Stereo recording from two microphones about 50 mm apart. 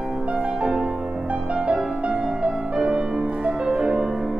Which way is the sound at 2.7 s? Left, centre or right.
Centre.